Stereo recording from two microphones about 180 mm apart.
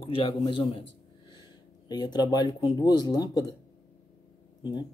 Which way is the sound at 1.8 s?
20° left (ahead or behind).